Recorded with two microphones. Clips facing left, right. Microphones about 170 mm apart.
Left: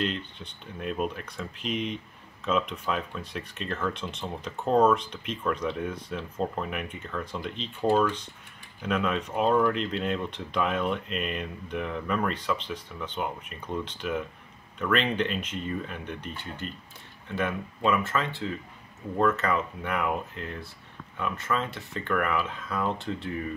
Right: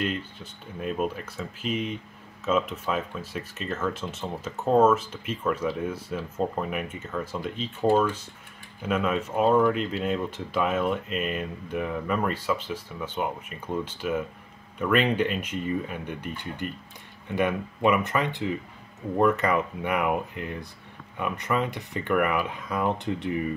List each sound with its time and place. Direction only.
0.0 s speech: 5° right (ahead or behind)